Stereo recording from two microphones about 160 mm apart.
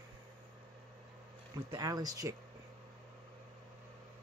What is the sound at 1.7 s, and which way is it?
Speech, 25° right (ahead or behind).